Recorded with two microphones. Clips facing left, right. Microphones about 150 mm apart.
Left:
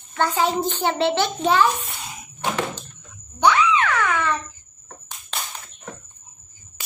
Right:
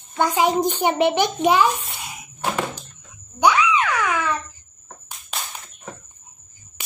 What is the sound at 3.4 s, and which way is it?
Screaming, 10° right (ahead or behind).